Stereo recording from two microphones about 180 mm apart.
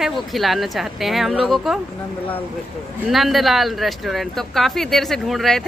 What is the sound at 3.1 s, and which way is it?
Speech, centre (ahead or behind).